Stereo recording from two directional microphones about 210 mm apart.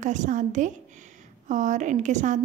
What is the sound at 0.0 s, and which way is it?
A woman's voice, 35° right (ahead or behind).